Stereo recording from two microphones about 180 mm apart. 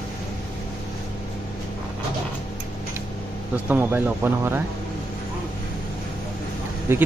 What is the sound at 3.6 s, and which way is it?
Speech, 10° right (ahead or behind).